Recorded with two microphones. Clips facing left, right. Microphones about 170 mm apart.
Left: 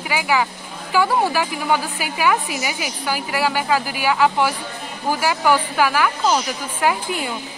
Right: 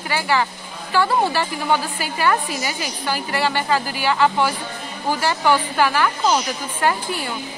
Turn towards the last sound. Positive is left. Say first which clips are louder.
# even
turn(degrees=5)  # may be behind; listen again after turning